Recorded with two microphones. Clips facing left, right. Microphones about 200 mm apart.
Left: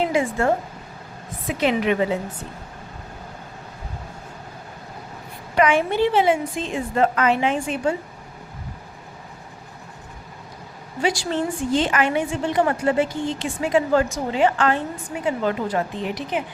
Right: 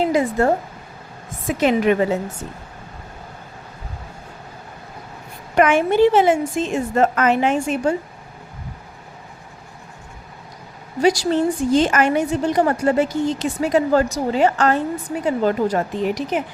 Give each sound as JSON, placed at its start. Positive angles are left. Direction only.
{"t": 0.1, "sound": "a woman's voice", "side_deg": -40}
{"t": 5.5, "sound": "a woman's voice", "side_deg": -50}
{"t": 11.0, "sound": "a woman's voice", "side_deg": -40}